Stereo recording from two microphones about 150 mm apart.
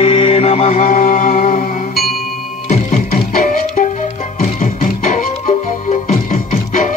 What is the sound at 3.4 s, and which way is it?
Music, 60° left (ahead or behind).